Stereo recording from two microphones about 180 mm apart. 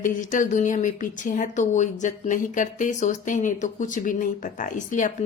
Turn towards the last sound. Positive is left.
turn(degrees=45)  # may be behind; listen again after turning